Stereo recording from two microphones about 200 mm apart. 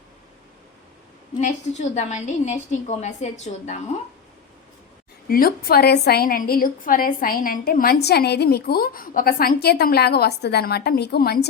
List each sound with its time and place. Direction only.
1.4 s a woman's voice: 35° left (ahead or behind)
5.3 s a woman's voice: 50° left (ahead or behind)